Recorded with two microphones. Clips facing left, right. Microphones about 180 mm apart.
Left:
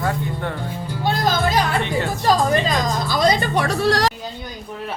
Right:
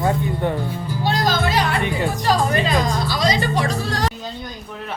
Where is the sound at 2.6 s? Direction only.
40° left (ahead or behind); by 4.1 s 70° left (ahead or behind).